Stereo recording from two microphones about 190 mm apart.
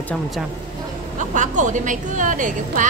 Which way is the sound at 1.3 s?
40° right (ahead or behind).